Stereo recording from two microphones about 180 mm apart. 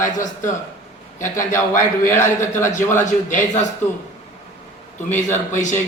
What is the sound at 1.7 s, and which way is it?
A man's voice, 45° left (ahead or behind).